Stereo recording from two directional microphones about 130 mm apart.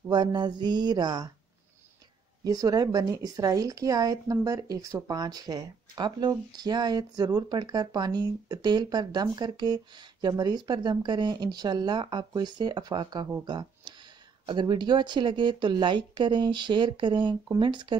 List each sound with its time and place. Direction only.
0.1 s speech: 35° right (ahead or behind)
2.4 s speech: 30° right (ahead or behind)
13.5 s a sound: 35° right (ahead or behind)
14.4 s speech: 35° right (ahead or behind)